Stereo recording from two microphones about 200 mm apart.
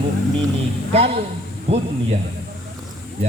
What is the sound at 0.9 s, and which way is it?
Speech, 30° right (ahead or behind).